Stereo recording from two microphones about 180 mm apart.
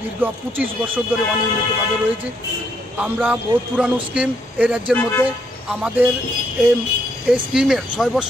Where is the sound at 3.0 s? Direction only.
5° right (ahead or behind).